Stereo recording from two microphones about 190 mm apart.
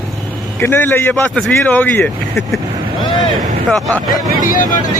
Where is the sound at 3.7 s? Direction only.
Centre (ahead or behind).